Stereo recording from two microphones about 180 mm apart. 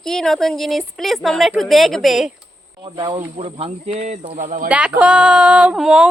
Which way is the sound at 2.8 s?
25° right (ahead or behind).